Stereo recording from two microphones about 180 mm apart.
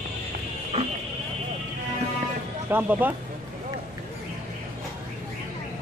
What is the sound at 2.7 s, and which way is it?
Speech, 10° right (ahead or behind).